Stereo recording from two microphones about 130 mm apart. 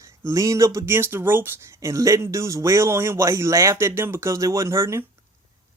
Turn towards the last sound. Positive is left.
turn(degrees=-20)  # may be behind; listen again after turning